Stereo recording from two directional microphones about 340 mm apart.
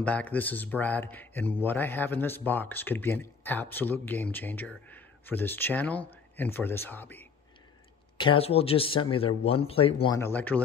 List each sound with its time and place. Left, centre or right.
0.0 s speech: centre
8.2 s speech: centre